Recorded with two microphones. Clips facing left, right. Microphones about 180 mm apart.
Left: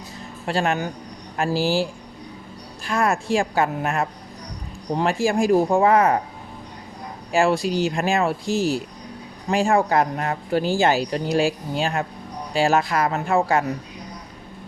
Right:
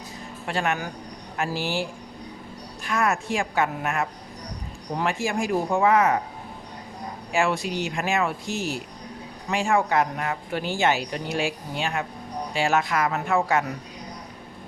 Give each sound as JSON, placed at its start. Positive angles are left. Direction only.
{"t": 0.4, "sound": "speech", "side_deg": 30}
{"t": 7.3, "sound": "speech", "side_deg": 35}